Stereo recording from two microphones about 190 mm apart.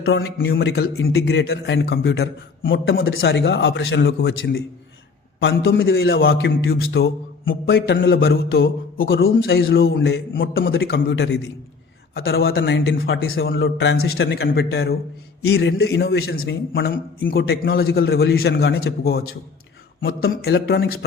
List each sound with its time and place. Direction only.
0.0 s a man's voice: 80° left
0.5 s a man's voice: 60° left (ahead or behind); by 6.2 s 75° left (ahead or behind)
6.3 s a man's voice: 90° left
6.7 s a man's voice: 60° left (ahead or behind); by 8.2 s 75° left (ahead or behind)
8.3 s a man's voice: 90° left
9.8 s a man's voice: 60° left (ahead or behind)
12.1 s a man's voice: 55° left (ahead or behind)
12.5 s a man's voice: 65° left (ahead or behind)
16.3 s a man's voice: 90° left
17.3 s a man's voice: 55° left (ahead or behind)